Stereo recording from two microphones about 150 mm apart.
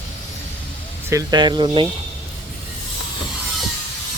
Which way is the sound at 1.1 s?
25° right (ahead or behind).